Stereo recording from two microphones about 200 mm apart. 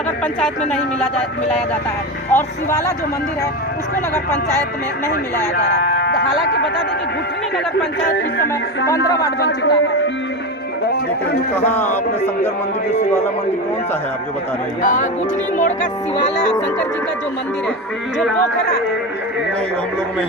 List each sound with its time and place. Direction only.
0.3 s speech: centre (ahead or behind)
2.3 s speech: 10° left (ahead or behind)
6.1 s speech: 55° left (ahead or behind)
8.0 s speech: 50° left (ahead or behind)
9.0 s speech: 15° left (ahead or behind)
9.4 s a man's voice: 55° left (ahead or behind)
11.5 s speech: 10° left (ahead or behind)
14.8 s speech: 40° left (ahead or behind)